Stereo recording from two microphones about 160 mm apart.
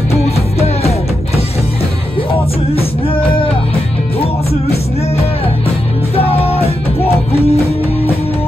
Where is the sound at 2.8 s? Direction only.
35° left (ahead or behind).